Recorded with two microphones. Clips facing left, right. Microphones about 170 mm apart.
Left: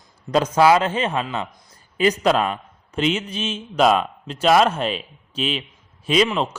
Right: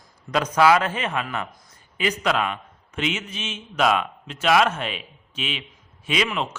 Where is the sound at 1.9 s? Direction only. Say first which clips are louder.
Left 6 dB; 35° left (ahead or behind).